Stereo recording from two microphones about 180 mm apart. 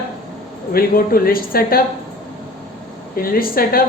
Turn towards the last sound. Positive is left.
turn(degrees=55)  # may be behind; listen again after turning